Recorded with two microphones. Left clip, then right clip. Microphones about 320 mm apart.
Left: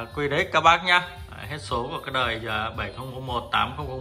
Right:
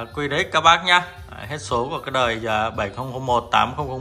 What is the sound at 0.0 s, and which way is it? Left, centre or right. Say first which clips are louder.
Speech: right 2 dB; centre.